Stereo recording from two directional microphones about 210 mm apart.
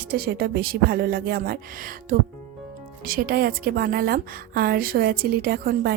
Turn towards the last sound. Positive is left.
turn(degrees=-45)  # may be behind; listen again after turning